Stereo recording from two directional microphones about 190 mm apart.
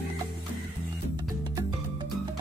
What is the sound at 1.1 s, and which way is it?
Music, 25° right (ahead or behind).